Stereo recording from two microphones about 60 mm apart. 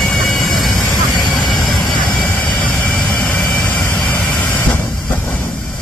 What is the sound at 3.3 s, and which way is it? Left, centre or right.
Vehicle, centre.